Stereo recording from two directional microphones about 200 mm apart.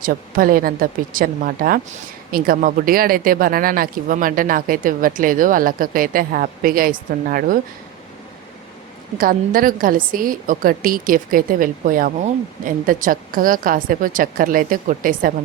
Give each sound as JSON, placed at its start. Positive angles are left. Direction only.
{"t": 0.0, "sound": "speech", "side_deg": -45}
{"t": 9.1, "sound": "speech", "side_deg": -45}